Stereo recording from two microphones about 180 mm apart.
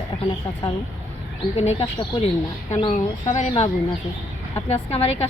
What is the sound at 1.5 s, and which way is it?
Speech, 35° left (ahead or behind).